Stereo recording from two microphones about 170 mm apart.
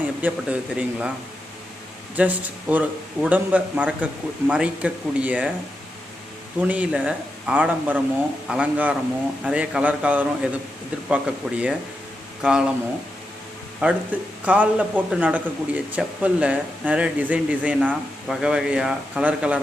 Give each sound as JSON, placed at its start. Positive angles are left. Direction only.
{"t": 0.2, "sound": "speech", "side_deg": -5}
{"t": 2.1, "sound": "speech", "side_deg": -10}
{"t": 6.6, "sound": "speech", "side_deg": -5}
{"t": 13.8, "sound": "speech", "side_deg": -10}